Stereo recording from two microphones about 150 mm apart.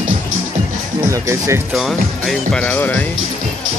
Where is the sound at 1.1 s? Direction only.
20° right (ahead or behind).